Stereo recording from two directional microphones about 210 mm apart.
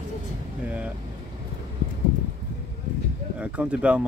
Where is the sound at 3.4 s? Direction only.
5° right (ahead or behind).